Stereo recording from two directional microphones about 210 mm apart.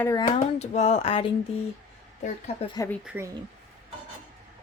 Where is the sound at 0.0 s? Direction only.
15° left (ahead or behind).